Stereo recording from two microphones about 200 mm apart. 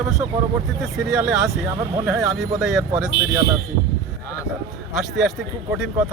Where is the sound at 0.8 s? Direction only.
Centre (ahead or behind).